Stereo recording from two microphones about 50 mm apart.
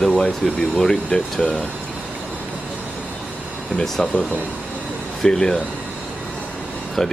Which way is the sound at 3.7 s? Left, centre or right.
Centre.